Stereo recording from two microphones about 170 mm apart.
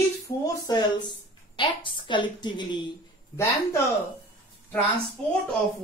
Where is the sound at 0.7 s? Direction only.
25° left (ahead or behind).